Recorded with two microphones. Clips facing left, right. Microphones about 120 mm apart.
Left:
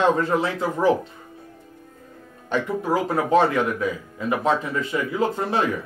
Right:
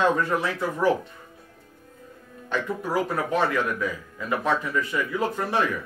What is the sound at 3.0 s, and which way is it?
Speech, 30° left (ahead or behind).